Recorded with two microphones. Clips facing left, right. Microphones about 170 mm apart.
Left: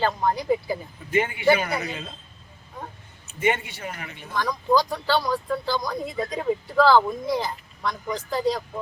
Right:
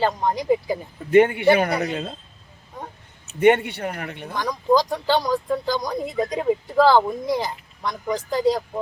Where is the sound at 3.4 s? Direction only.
60° right (ahead or behind).